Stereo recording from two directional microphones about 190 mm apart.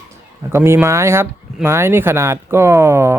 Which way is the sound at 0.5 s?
15° right (ahead or behind).